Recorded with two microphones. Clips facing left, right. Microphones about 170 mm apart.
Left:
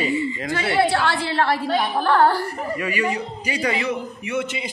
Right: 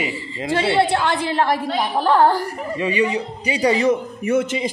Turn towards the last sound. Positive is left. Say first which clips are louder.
# right 6 dB
turn(degrees=-45)  # may be behind; listen again after turning